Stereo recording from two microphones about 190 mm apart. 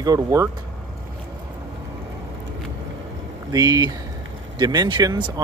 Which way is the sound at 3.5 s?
20° right (ahead or behind).